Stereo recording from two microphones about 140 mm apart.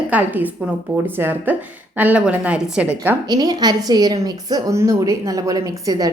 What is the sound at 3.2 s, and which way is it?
A woman's voice, 30° right (ahead or behind).